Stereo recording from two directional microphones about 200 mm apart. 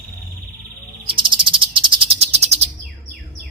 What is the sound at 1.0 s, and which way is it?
Cricket, 25° right (ahead or behind).